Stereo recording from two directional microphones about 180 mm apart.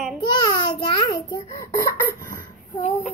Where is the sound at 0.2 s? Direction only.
25° left (ahead or behind).